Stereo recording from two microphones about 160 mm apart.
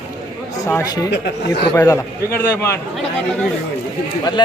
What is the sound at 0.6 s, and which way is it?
Speech, 20° left (ahead or behind).